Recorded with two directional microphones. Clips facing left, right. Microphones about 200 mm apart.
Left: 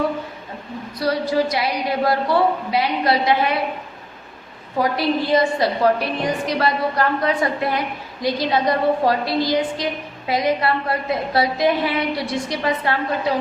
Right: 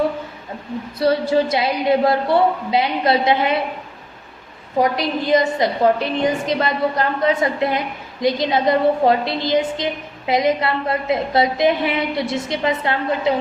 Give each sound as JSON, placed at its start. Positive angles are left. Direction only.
{"t": 0.9, "sound": "a woman's voice", "side_deg": -25}
{"t": 4.8, "sound": "a woman's voice", "side_deg": -20}